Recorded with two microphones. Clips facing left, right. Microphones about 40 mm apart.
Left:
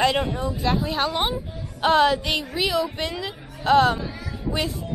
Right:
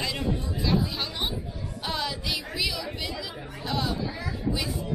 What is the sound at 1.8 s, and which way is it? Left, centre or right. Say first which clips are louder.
A woman's voice: left 14 dB; left.